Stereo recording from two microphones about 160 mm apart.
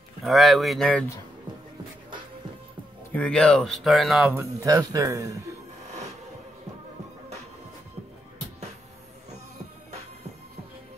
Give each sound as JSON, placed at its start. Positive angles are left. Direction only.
{"t": 0.2, "sound": "speech", "side_deg": 0}
{"t": 3.1, "sound": "speech", "side_deg": 5}
{"t": 4.3, "sound": "speech", "side_deg": -15}